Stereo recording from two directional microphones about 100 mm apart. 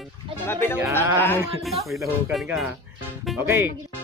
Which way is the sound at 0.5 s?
25° left (ahead or behind).